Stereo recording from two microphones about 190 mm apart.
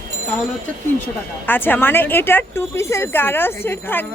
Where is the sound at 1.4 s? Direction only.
10° left (ahead or behind).